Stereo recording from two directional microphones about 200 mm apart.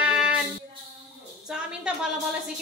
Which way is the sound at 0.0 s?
5° right (ahead or behind).